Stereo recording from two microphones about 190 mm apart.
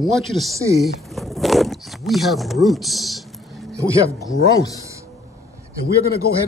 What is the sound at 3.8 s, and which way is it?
Speech, 15° right (ahead or behind).